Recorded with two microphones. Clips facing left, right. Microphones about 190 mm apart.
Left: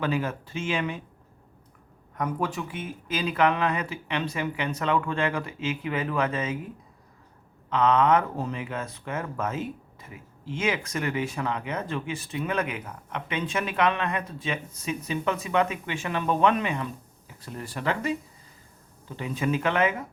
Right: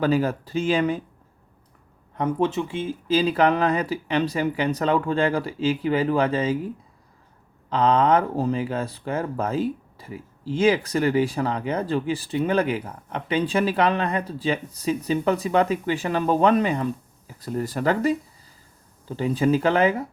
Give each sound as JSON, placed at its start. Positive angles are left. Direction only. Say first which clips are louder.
{"t": 0.0, "sound": "speech", "louder": "right 6 dB", "side_deg": -35}
{"t": 2.1, "sound": "speech", "louder": "right 6 dB", "side_deg": -25}
{"t": 7.7, "sound": "speech", "louder": "right 2 dB", "side_deg": -35}